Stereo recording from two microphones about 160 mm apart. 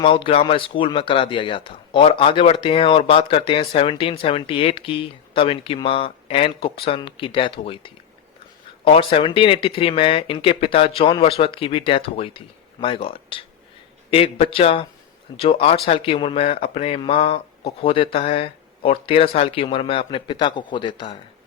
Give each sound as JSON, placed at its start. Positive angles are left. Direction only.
{"t": 0.0, "sound": "speech", "side_deg": 35}